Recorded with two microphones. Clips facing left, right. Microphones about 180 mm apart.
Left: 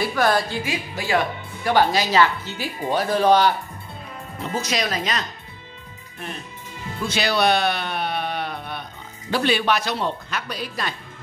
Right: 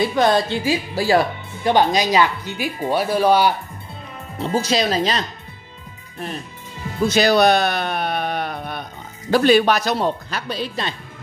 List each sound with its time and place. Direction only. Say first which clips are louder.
0.0 s speech: right 4 dB; 20° right (ahead or behind)
1.6 s speech: right 2 dB; 20° right (ahead or behind)
4.4 s speech: right 6 dB; 30° right (ahead or behind)
7.1 s bleat: right 5 dB; 45° right (ahead or behind)
9.3 s speech: right 6 dB; 45° right (ahead or behind)
10.5 s speech: right 6 dB; 25° right (ahead or behind)